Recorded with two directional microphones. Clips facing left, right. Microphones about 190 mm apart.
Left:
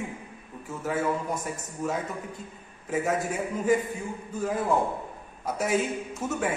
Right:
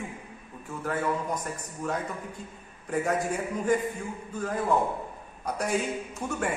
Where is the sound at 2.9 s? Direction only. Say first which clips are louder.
Even; 5° left (ahead or behind).